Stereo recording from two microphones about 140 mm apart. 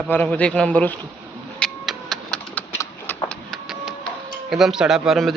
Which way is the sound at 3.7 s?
5° right (ahead or behind).